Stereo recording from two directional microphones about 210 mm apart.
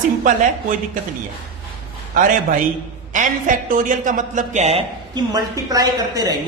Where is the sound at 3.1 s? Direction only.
40° right (ahead or behind).